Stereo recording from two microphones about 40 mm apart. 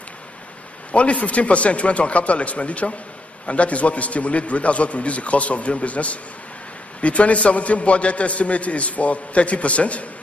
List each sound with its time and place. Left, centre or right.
0.9 s a man's voice: left